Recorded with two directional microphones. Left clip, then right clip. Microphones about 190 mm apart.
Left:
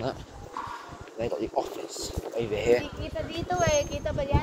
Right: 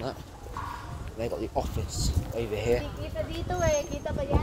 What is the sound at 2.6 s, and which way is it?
Speech, 25° left (ahead or behind).